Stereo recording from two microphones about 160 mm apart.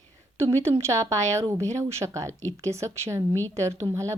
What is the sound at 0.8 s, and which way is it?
A woman's voice, 20° right (ahead or behind).